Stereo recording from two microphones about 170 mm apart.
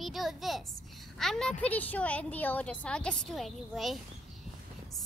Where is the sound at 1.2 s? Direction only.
5° left (ahead or behind).